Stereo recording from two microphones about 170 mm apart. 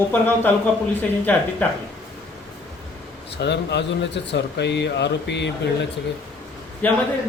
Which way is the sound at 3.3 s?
85° left.